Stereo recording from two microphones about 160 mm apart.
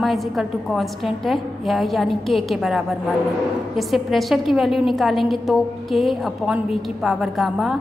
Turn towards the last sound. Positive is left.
turn(degrees=0)  # may be behind; listen again after turning